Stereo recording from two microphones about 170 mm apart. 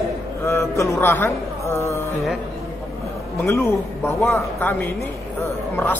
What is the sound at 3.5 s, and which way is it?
A man's voice, 15° left (ahead or behind).